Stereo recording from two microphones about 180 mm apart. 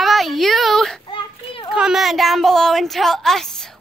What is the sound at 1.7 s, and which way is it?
Speech, 5° right (ahead or behind).